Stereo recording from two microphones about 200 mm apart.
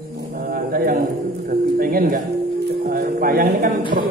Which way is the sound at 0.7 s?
45° right (ahead or behind).